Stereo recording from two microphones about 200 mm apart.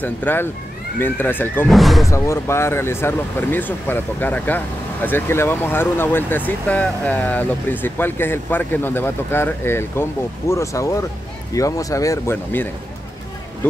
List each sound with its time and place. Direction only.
0.0 s speech: 10° left (ahead or behind)
2.0 s speech: 15° left (ahead or behind)